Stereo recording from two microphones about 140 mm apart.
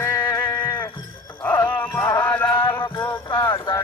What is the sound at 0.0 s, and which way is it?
Music, 20° left (ahead or behind).